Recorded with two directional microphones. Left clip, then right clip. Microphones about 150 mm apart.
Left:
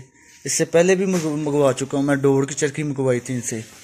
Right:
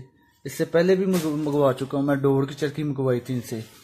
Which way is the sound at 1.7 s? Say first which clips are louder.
Left 3 dB; 15° left (ahead or behind).